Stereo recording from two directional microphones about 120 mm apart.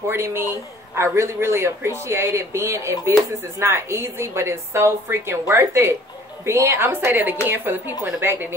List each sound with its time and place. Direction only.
0.1 s a woman's voice: 20° right (ahead or behind)